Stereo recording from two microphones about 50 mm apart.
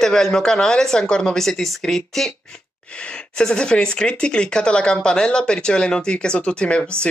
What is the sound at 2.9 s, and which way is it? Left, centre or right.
Speech, centre.